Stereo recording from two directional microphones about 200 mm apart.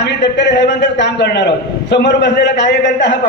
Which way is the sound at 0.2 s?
60° left (ahead or behind).